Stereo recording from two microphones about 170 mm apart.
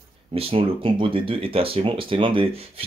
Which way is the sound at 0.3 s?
35° right (ahead or behind).